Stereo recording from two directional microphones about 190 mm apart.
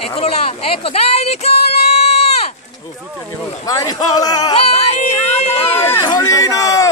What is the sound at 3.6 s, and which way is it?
Speech, 20° left (ahead or behind).